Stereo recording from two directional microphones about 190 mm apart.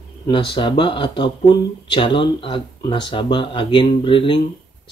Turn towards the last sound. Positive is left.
turn(degrees=25)  # may be behind; listen again after turning